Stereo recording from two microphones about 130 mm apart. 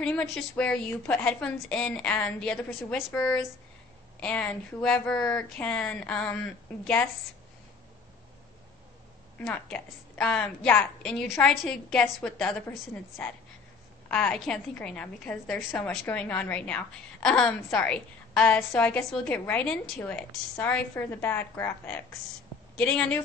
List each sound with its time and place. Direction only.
0.0 s speech: 10° left (ahead or behind)
9.5 s speech: 10° left (ahead or behind)
14.1 s speech: 10° left (ahead or behind)